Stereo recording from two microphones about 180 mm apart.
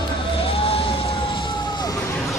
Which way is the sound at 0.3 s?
30° left (ahead or behind).